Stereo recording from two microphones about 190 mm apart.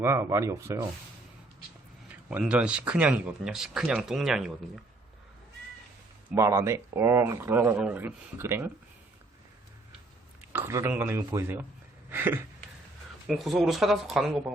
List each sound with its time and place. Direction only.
0.0 s speech: 15° right (ahead or behind)
2.3 s speech: 5° right (ahead or behind)
6.3 s speech: 15° right (ahead or behind)
10.5 s speech: 15° right (ahead or behind)